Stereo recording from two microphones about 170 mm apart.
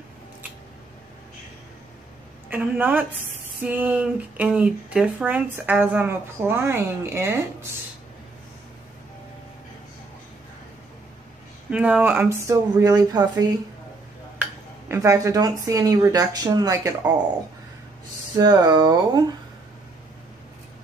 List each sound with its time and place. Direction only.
2.5 s speech: 10° right (ahead or behind)
11.7 s speech: 10° right (ahead or behind)
18.4 s speech: 25° right (ahead or behind)